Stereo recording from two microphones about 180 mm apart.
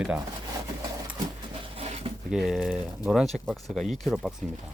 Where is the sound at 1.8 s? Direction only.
35° right (ahead or behind).